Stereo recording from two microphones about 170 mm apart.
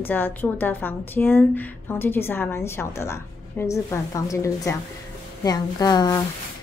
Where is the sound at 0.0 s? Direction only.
10° left (ahead or behind).